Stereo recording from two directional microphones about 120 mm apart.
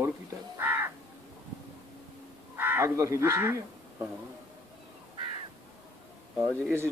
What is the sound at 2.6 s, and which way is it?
Speech, 20° right (ahead or behind).